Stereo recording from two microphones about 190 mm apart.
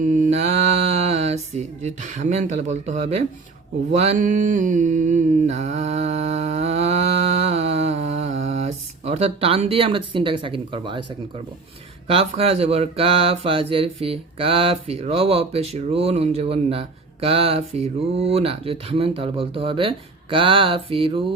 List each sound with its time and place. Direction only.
0.0 s speech: 40° right (ahead or behind)
3.9 s mantra: 35° right (ahead or behind)
7.4 s a sound: 35° right (ahead or behind)
12.0 s speech: 35° right (ahead or behind)